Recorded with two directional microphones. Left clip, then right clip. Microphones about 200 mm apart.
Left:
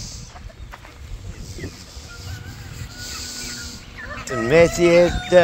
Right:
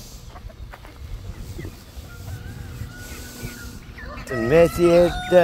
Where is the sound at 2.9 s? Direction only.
20° right (ahead or behind).